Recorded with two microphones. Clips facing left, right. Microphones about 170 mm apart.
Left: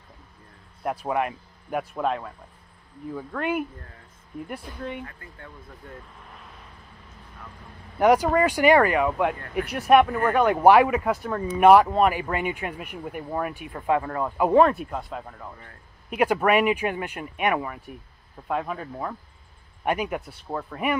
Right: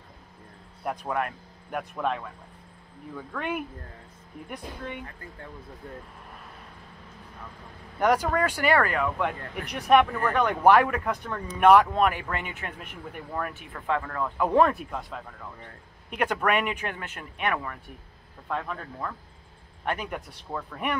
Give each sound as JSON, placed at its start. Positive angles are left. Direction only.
{"t": 0.8, "sound": "speech", "side_deg": 5}
{"t": 8.0, "sound": "speech", "side_deg": 10}
{"t": 14.4, "sound": "speech", "side_deg": 0}